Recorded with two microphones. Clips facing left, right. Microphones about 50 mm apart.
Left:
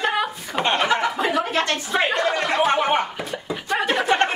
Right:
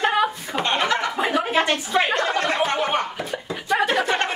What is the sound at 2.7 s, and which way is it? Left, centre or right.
Music, centre.